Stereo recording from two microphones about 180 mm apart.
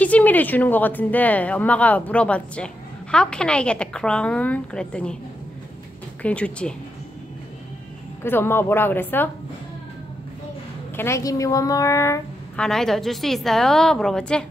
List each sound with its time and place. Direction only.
0.0 s speech: 10° left (ahead or behind)
6.2 s speech: 5° left (ahead or behind)
8.2 s speech: 10° left (ahead or behind)
11.0 s speech: 15° left (ahead or behind)
12.5 s a woman's voice: 5° left (ahead or behind)